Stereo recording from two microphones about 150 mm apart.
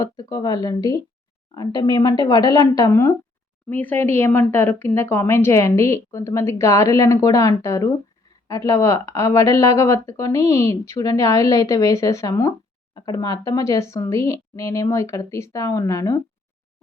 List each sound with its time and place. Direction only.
0.0 s speech: 25° left (ahead or behind)